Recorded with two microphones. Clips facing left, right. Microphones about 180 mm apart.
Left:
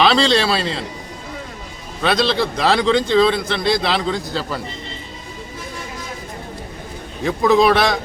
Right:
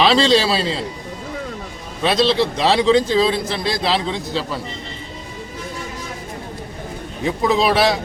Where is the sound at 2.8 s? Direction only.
5° right (ahead or behind).